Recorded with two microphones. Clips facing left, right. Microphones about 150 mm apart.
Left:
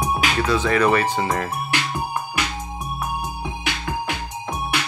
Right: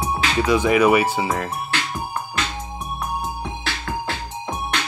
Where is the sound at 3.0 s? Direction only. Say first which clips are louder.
Right 1 dB; 15° left (ahead or behind).